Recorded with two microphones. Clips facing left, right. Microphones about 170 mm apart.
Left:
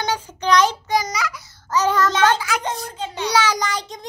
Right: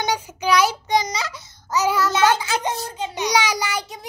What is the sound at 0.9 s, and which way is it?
Child singing, 25° right (ahead or behind).